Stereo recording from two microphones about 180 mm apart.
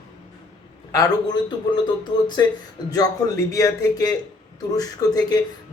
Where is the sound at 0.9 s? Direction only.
20° left (ahead or behind).